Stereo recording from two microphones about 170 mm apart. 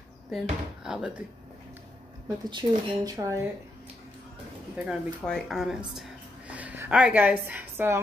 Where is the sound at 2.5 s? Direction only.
25° right (ahead or behind).